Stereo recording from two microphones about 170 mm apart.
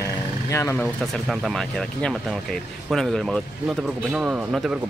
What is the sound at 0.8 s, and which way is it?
Speech, centre (ahead or behind).